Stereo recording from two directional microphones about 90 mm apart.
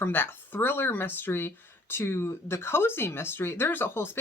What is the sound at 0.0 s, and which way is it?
Speech, 25° left (ahead or behind).